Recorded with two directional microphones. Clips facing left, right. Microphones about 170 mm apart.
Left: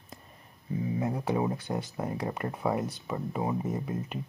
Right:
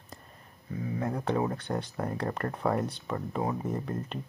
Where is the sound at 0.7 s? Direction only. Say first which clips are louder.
Left 3 dB; 20° left (ahead or behind).